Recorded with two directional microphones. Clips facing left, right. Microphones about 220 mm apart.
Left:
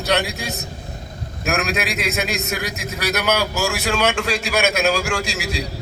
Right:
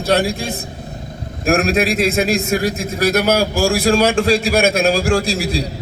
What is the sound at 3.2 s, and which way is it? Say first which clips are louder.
A man's voice: right 4 dB; 30° right (ahead or behind).